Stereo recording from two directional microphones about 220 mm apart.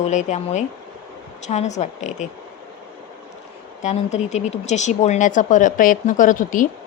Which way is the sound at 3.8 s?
30° left (ahead or behind).